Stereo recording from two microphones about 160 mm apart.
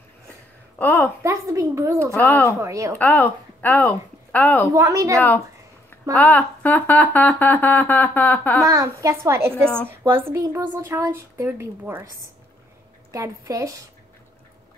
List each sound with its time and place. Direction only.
0.7 s speech: 10° left (ahead or behind)
1.2 s a woman's voice: 20° right (ahead or behind)
2.1 s speech: 10° left (ahead or behind)
2.6 s a woman's voice: 20° right (ahead or behind)
3.0 s a woman's voice: 10° left (ahead or behind)
4.7 s a woman's voice: 20° right (ahead or behind)
6.1 s speech: 10° left (ahead or behind)
8.6 s speech: 20° right (ahead or behind)
13.1 s a woman's voice: 20° right (ahead or behind)